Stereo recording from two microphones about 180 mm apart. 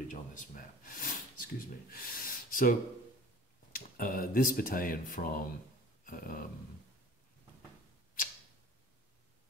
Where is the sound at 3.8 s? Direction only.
50° left (ahead or behind).